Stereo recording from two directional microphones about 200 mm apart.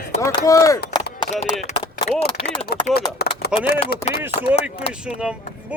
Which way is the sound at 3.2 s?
55° left (ahead or behind).